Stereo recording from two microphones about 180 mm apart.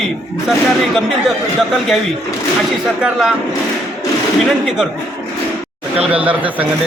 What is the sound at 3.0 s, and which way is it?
Speech, centre (ahead or behind).